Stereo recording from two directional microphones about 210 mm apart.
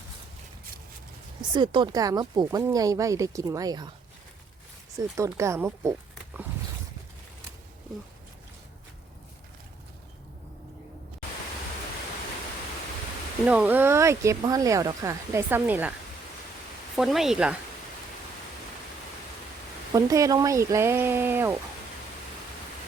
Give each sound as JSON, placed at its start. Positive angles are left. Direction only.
{"t": 1.4, "sound": "speech", "side_deg": -20}
{"t": 4.9, "sound": "speech", "side_deg": -15}
{"t": 13.4, "sound": "speech", "side_deg": -5}
{"t": 16.9, "sound": "speech", "side_deg": 0}
{"t": 19.9, "sound": "speech", "side_deg": -15}